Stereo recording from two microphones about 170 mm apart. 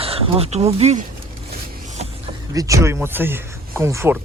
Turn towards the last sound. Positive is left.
turn(degrees=-15)  # may be behind; listen again after turning